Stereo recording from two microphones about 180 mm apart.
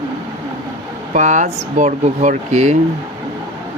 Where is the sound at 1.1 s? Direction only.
45° right (ahead or behind).